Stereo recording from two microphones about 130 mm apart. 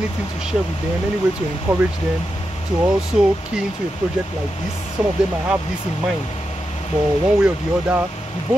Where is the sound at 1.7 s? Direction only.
25° right (ahead or behind).